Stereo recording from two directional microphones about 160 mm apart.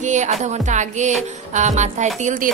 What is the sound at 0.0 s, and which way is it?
Music, 50° right (ahead or behind).